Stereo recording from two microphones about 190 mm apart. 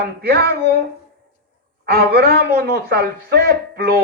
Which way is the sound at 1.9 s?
55° right (ahead or behind).